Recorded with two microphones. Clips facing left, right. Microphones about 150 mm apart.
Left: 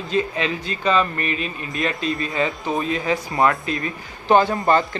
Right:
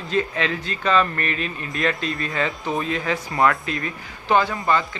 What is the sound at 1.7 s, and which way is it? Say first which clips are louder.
Speech: left 1 dB; 20° left (ahead or behind).